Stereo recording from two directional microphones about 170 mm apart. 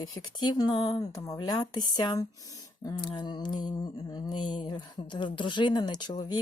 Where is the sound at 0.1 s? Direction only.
25° left (ahead or behind).